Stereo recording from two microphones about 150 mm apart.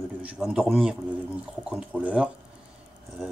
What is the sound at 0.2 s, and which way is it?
A man's voice, 5° right (ahead or behind).